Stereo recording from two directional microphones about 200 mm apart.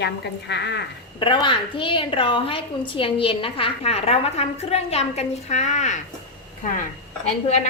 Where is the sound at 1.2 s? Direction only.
25° left (ahead or behind).